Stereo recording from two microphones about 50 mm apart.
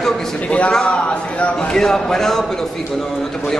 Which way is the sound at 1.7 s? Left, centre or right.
Centre.